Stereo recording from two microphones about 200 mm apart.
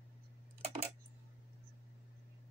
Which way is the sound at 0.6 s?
30° right (ahead or behind).